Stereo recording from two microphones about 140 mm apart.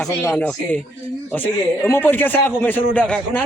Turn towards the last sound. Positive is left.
turn(degrees=10)  # may be behind; listen again after turning